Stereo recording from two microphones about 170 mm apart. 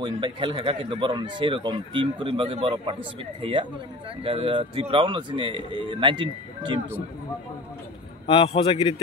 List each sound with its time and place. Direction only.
0.0 s speech: 30° right (ahead or behind)
8.3 s a man's voice: 35° left (ahead or behind)